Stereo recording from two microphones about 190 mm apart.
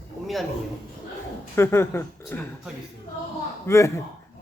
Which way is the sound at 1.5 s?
15° left (ahead or behind).